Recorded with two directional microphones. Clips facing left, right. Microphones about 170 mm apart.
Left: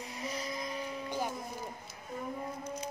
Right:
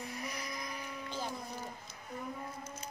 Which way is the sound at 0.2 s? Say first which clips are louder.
Left 4 dB; 25° left (ahead or behind).